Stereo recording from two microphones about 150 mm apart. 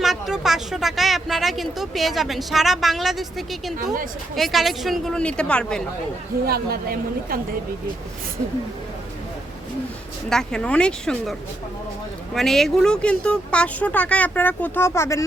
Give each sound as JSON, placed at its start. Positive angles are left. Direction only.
{"t": 0.0, "sound": "speech", "side_deg": 0}
{"t": 6.5, "sound": "a woman's voice", "side_deg": -85}
{"t": 10.2, "sound": "speech", "side_deg": 5}